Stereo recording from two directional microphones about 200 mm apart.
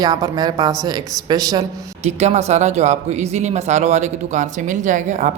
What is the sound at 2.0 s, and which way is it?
Speech, 35° right (ahead or behind).